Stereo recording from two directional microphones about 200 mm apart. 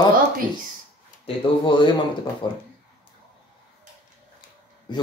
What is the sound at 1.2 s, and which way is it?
Speech, 25° left (ahead or behind).